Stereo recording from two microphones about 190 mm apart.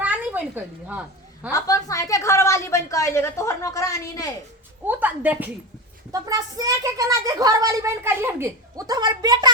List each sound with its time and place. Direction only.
0.0 s a woman's voice: 5° right (ahead or behind)
1.5 s a woman's voice: 15° left (ahead or behind)
4.9 s a woman's voice: 10° right (ahead or behind)
6.1 s a woman's voice: 20° right (ahead or behind)